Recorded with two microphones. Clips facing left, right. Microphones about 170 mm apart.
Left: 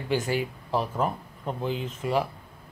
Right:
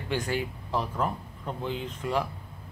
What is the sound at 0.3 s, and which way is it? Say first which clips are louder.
Speech: left 3 dB; 10° left (ahead or behind).